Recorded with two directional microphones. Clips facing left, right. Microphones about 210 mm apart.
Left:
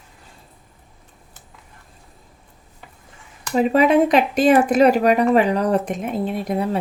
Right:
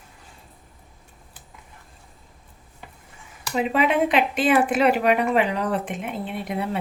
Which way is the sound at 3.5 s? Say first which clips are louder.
Left 6 dB; 40° left (ahead or behind).